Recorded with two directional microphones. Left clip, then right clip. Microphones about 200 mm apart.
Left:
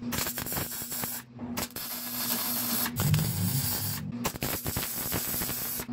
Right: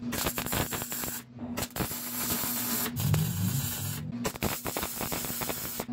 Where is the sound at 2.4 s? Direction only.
Centre (ahead or behind).